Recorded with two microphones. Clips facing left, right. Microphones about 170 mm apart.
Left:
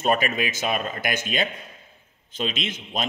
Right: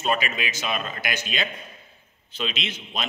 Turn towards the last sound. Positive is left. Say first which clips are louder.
# left 3 dB
turn(degrees=45)  # may be behind; listen again after turning